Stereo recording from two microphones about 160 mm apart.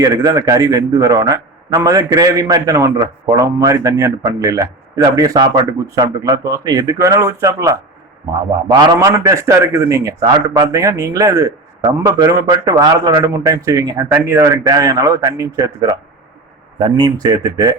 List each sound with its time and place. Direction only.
0.0 s speech: 25° right (ahead or behind)